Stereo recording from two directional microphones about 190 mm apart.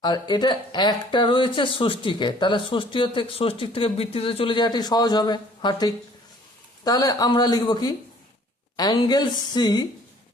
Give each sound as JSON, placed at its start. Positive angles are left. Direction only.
{"t": 0.0, "sound": "speech", "side_deg": 20}